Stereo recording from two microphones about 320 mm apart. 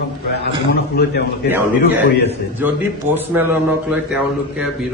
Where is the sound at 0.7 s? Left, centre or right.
Left.